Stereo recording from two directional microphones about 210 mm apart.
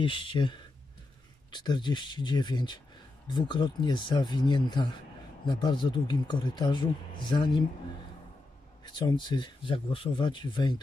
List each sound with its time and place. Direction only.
0.0 s speech: 25° left (ahead or behind)
8.8 s speech: 20° left (ahead or behind)